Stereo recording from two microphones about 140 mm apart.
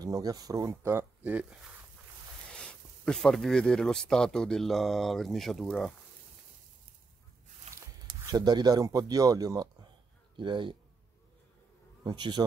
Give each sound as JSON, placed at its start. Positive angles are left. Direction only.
{"t": 0.0, "sound": "speech", "side_deg": -25}
{"t": 2.5, "sound": "speech", "side_deg": 5}
{"t": 7.7, "sound": "a sound", "side_deg": -50}
{"t": 8.1, "sound": "speech", "side_deg": -30}
{"t": 12.0, "sound": "speech", "side_deg": -30}